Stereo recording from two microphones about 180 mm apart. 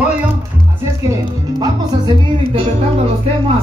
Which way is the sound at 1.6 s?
25° right (ahead or behind).